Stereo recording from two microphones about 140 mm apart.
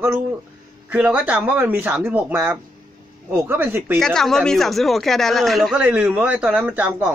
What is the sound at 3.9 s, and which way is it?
Speech, 5° left (ahead or behind).